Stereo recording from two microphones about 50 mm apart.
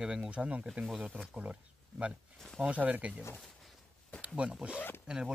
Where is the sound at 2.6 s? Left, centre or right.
Right.